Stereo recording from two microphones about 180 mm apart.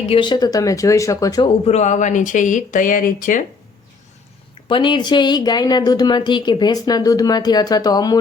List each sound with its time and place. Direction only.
0.1 s a woman's voice: 25° left (ahead or behind)
1.6 s speech: 40° left (ahead or behind)
4.7 s a woman's voice: 25° left (ahead or behind)